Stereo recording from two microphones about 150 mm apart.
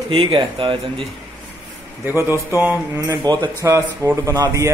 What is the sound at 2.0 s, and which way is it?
Speech, 15° right (ahead or behind).